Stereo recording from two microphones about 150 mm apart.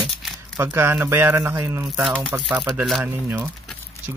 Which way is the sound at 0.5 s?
15° right (ahead or behind).